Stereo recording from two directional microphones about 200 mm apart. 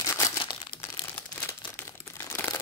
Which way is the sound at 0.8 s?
15° left (ahead or behind).